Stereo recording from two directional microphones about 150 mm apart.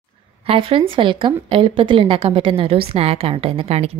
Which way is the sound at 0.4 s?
40° right (ahead or behind).